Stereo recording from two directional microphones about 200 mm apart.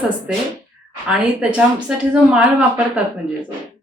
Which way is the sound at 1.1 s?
5° right (ahead or behind).